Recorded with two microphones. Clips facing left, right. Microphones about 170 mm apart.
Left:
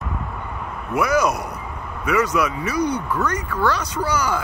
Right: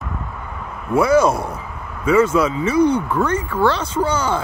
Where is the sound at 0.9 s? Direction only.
30° right (ahead or behind).